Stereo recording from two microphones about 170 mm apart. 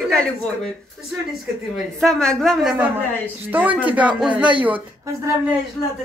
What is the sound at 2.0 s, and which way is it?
Speech, 5° left (ahead or behind).